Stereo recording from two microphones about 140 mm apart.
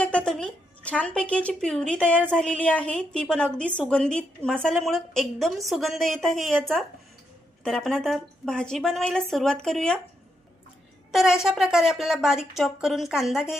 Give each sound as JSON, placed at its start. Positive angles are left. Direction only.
{"t": 0.0, "sound": "a woman's voice", "side_deg": 10}
{"t": 11.1, "sound": "a woman's voice", "side_deg": -5}